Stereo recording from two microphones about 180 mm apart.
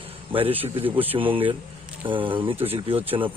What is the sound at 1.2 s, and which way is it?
Speech, 30° right (ahead or behind).